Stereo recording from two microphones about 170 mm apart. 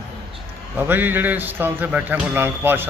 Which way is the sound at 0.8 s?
10° right (ahead or behind).